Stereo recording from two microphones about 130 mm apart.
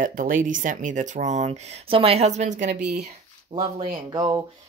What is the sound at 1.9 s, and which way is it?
Speech, 50° right (ahead or behind).